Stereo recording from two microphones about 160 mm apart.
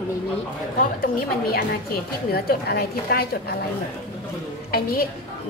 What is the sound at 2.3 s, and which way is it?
Speech, 75° left (ahead or behind).